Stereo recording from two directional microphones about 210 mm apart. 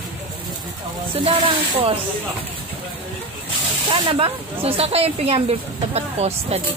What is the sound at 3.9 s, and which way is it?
Speech, 25° right (ahead or behind).